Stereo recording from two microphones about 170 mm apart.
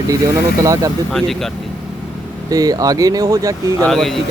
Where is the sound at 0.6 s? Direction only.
20° right (ahead or behind).